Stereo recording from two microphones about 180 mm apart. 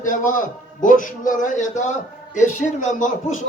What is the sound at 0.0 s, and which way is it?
A man's voice, 45° left (ahead or behind).